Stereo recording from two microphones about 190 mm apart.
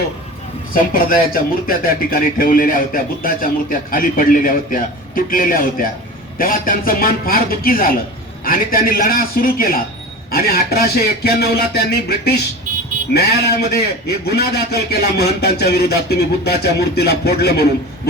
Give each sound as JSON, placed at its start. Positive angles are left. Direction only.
{"t": 0.7, "sound": "speech", "side_deg": 50}